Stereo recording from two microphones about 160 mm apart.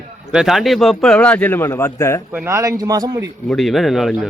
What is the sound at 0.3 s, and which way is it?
A man's voice, 5° right (ahead or behind).